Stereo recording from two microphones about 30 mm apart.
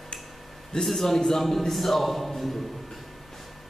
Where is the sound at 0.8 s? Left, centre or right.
Centre.